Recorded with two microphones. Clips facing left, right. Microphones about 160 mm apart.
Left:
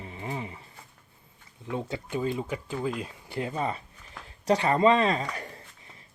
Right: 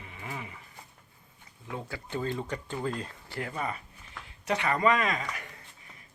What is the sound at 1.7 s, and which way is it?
Speech, 20° left (ahead or behind).